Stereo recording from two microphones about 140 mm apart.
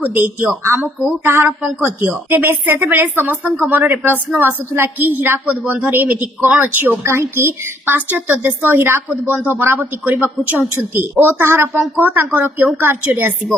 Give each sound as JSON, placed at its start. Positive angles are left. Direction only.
{"t": 0.0, "sound": "a woman's voice", "side_deg": -15}